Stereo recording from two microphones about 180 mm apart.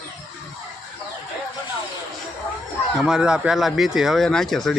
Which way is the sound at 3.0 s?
5° right (ahead or behind).